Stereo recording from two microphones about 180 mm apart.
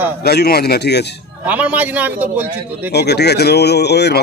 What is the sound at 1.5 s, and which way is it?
Speech, 10° right (ahead or behind).